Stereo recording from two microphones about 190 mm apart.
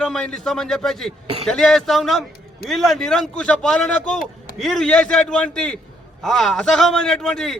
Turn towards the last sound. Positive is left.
turn(degrees=0)  # may be behind; listen again after turning